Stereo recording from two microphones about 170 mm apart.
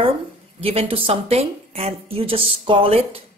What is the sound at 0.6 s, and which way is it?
Speech, 35° right (ahead or behind).